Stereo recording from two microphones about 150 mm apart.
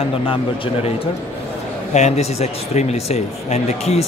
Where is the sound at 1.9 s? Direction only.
50° left (ahead or behind).